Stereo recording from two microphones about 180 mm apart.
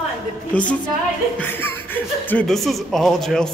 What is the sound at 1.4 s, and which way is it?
Speech, 10° left (ahead or behind).